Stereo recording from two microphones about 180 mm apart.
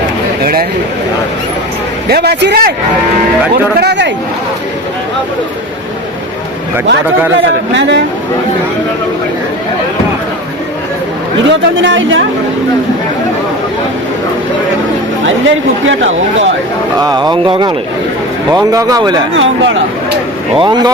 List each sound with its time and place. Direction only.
2.0 s a man's voice: 65° right (ahead or behind)
3.8 s a man's voice: 70° right (ahead or behind)
7.8 s speech: 80° right
11.4 s speech: 90° right
15.4 s speech: 90° right
17.0 s speech: 20° right (ahead or behind)
19.3 s speech: 90° right
20.6 s speech: 20° right (ahead or behind)